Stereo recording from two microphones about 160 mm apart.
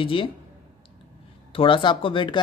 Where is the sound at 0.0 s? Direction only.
30° left (ahead or behind).